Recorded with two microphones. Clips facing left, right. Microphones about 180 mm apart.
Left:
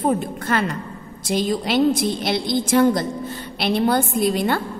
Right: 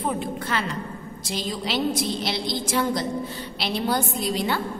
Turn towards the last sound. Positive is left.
turn(degrees=50)  # may be behind; listen again after turning